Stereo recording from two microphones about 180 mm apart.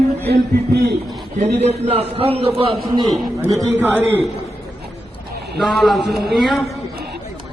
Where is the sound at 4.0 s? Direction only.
10° right (ahead or behind).